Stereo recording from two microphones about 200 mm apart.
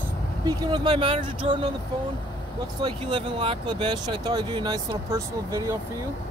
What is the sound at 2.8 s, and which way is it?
Speech, 25° right (ahead or behind).